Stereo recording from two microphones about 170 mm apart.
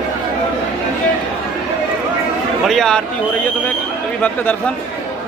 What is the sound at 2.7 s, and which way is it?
Speech, 5° left (ahead or behind).